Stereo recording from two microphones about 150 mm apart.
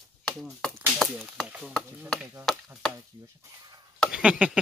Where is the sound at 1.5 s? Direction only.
Centre (ahead or behind).